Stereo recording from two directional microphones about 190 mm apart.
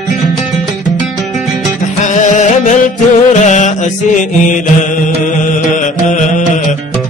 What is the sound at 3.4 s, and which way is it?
Music, 40° left (ahead or behind).